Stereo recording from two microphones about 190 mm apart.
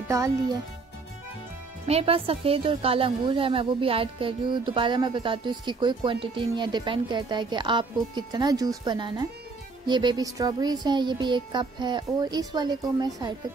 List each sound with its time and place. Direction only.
0.1 s a child's voice: 15° right (ahead or behind)
1.9 s a woman's voice: 30° right (ahead or behind)